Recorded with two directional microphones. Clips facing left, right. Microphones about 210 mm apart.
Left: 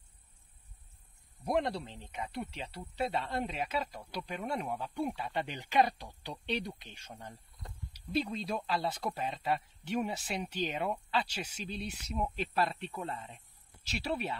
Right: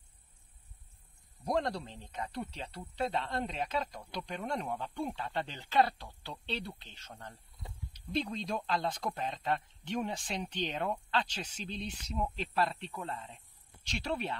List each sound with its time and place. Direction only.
1.4 s speech: 5° left (ahead or behind)
7.6 s a sound: 5° right (ahead or behind)
7.9 s speech: 5° left (ahead or behind)
13.8 s speech: 5° left (ahead or behind)